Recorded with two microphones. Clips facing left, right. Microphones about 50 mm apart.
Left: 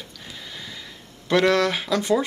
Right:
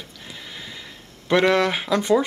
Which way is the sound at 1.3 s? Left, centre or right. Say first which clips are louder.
Right 1 dB; centre.